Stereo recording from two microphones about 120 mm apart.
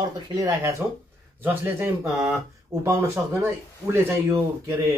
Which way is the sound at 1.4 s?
15° right (ahead or behind).